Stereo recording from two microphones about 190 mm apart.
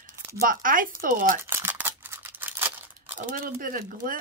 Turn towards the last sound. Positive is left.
turn(degrees=-45)  # may be behind; listen again after turning